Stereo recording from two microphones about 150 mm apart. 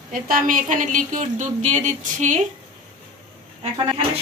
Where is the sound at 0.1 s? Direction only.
65° right (ahead or behind).